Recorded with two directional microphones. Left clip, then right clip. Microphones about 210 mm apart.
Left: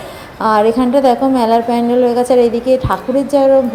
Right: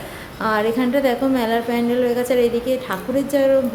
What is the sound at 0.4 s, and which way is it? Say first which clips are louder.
A woman's voice: left 8 dB; 15° left (ahead or behind).